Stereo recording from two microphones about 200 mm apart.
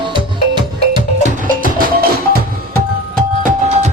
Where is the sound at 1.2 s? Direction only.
45° right (ahead or behind).